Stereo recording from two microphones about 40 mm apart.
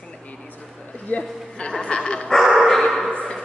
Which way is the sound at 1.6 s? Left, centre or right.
Left.